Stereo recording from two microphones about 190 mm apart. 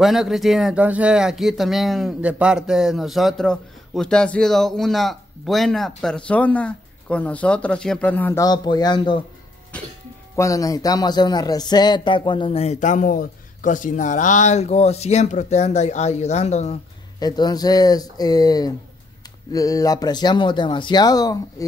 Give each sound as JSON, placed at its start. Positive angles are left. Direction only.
{"t": 0.0, "sound": "speech", "side_deg": 0}
{"t": 10.3, "sound": "speech", "side_deg": 15}
{"t": 17.2, "sound": "speech", "side_deg": 20}